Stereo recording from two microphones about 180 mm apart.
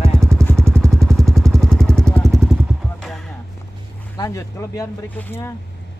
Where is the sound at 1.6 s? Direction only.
5° left (ahead or behind).